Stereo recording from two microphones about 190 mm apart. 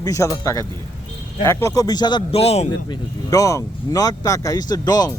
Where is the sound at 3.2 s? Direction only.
15° left (ahead or behind).